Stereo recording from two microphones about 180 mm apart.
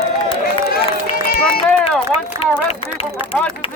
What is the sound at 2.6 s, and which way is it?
Speech, 35° left (ahead or behind).